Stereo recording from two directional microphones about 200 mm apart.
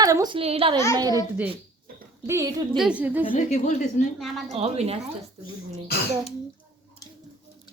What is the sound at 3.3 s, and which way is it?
Speech, 35° left (ahead or behind).